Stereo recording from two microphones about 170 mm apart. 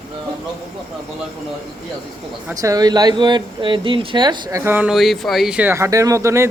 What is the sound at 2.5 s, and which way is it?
Speech, 20° right (ahead or behind).